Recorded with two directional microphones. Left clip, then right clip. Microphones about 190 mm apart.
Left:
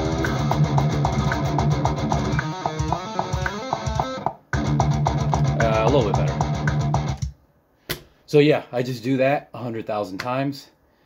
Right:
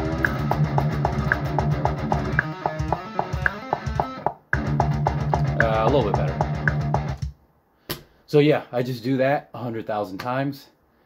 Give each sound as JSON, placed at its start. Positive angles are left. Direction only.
{"t": 0.0, "sound": "music", "side_deg": 65}
{"t": 5.7, "sound": "music", "side_deg": 0}
{"t": 6.3, "sound": "music", "side_deg": 65}
{"t": 7.8, "sound": "speech", "side_deg": 5}